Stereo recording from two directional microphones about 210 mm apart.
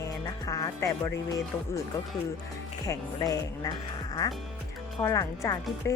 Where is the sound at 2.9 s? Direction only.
15° left (ahead or behind).